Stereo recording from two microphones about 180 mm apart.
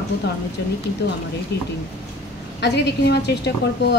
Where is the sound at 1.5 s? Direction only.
65° left (ahead or behind).